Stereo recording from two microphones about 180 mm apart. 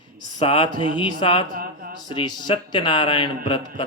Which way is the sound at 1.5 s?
55° right (ahead or behind).